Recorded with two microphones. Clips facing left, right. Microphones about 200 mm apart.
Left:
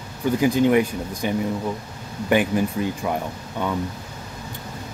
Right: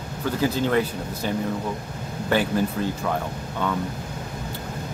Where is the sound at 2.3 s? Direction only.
15° left (ahead or behind).